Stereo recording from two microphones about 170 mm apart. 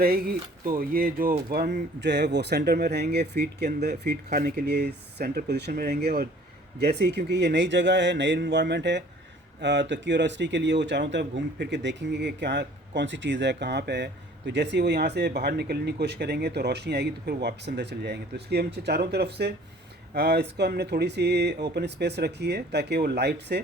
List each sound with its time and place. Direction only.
0.0 s speech: 60° right (ahead or behind); by 23.6 s 80° right